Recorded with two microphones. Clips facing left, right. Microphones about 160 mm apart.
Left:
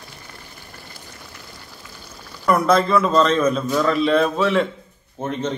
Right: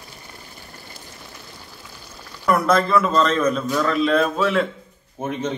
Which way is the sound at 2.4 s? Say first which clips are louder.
Left 1 dB; centre (ahead or behind).